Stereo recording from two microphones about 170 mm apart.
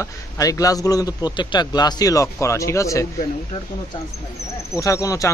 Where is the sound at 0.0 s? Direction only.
20° left (ahead or behind).